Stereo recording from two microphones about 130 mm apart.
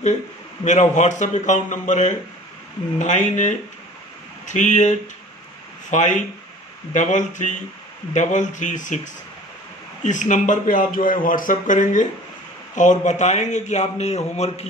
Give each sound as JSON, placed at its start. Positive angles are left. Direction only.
{"t": 0.7, "sound": "a man's voice", "side_deg": 65}